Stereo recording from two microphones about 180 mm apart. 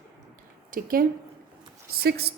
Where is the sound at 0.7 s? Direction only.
55° right (ahead or behind).